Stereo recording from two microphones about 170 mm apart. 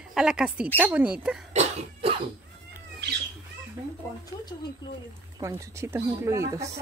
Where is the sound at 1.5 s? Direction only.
40° right (ahead or behind).